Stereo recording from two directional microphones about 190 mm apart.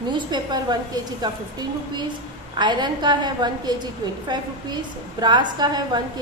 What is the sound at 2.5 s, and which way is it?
A woman's voice, 25° right (ahead or behind).